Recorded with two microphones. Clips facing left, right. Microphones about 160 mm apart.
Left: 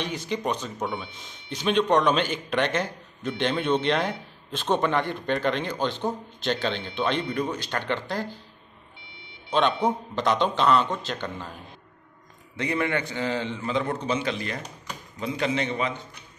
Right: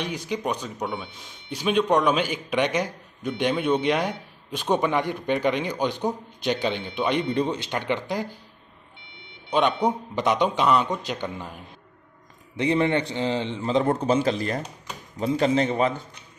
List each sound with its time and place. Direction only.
0.0 s a man's voice: 10° right (ahead or behind)
7.2 s a man's voice: 25° right (ahead or behind)
9.8 s a man's voice: 15° right (ahead or behind)
12.5 s a man's voice: 25° right (ahead or behind)